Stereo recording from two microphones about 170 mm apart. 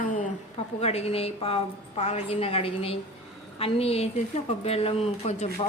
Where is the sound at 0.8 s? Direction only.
40° left (ahead or behind).